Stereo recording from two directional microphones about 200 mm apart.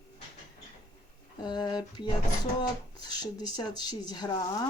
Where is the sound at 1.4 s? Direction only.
20° left (ahead or behind).